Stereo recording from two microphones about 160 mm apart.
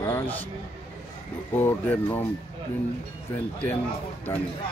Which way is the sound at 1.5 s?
10° left (ahead or behind).